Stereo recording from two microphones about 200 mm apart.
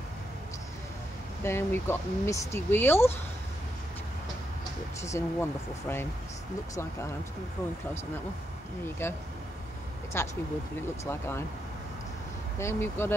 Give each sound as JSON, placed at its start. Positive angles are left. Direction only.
{"t": 1.4, "sound": "speech", "side_deg": 10}
{"t": 5.0, "sound": "speech", "side_deg": 15}
{"t": 9.0, "sound": "speech", "side_deg": 10}
{"t": 12.5, "sound": "speech", "side_deg": 10}